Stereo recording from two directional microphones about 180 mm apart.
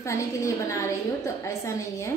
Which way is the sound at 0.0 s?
15° left (ahead or behind).